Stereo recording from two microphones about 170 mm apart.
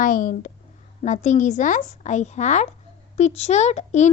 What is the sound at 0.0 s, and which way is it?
Speech, 55° left (ahead or behind).